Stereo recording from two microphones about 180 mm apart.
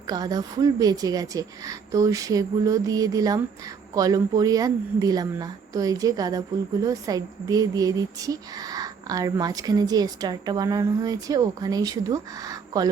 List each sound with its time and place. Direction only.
0.1 s speech: 20° right (ahead or behind)